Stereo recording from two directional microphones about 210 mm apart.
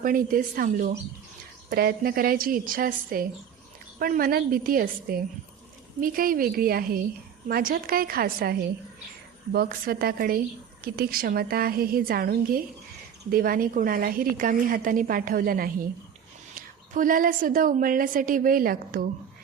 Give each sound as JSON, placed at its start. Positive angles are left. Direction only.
{"t": 0.0, "sound": "a woman's voice", "side_deg": -40}